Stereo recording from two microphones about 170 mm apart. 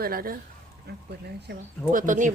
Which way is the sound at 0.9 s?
70° right (ahead or behind).